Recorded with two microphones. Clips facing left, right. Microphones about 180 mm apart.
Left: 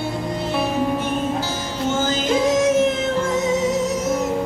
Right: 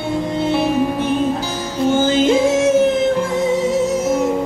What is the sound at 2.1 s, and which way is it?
Music, 25° right (ahead or behind).